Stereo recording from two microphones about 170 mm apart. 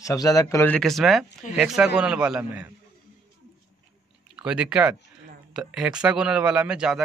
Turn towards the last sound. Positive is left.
turn(degrees=-5)  # may be behind; listen again after turning